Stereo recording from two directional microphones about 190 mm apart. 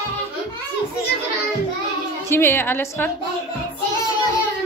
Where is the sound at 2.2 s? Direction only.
10° left (ahead or behind).